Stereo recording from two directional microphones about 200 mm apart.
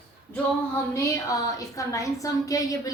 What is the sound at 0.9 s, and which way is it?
A woman's voice, 15° left (ahead or behind).